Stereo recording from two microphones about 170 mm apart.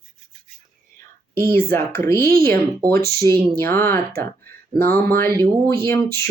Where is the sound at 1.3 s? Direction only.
15° left (ahead or behind).